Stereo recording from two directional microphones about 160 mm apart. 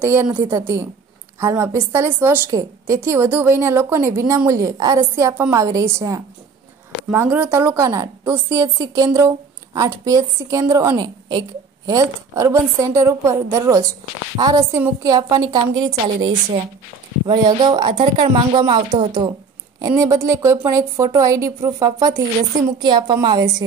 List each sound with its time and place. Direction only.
0.0 s a woman's voice: 15° right (ahead or behind); by 19.3 s 30° right (ahead or behind)
20.0 s a woman's voice: 20° right (ahead or behind)